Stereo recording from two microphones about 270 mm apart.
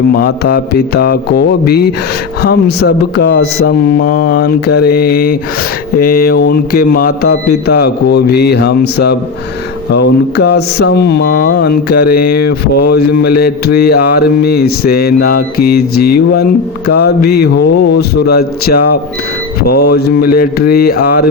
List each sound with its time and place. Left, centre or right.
0.1 s mantra: left